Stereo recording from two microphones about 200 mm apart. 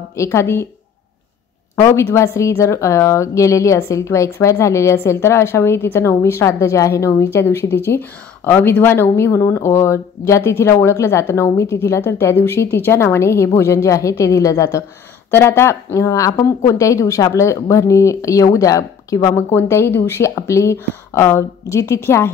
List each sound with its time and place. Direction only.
0.1 s speech: 15° left (ahead or behind)
1.8 s speech: 15° left (ahead or behind)